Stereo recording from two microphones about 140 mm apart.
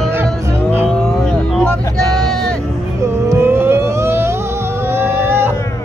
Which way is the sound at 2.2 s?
5° left (ahead or behind).